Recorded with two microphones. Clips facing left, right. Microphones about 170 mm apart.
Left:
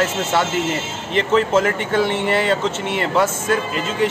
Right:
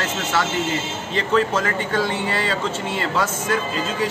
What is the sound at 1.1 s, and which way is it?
Speech, 25° left (ahead or behind).